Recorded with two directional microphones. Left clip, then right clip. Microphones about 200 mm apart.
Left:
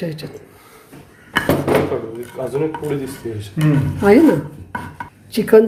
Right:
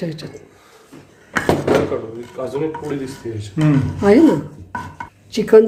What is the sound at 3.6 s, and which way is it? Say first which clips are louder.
Speech: right 2 dB; 60° right (ahead or behind).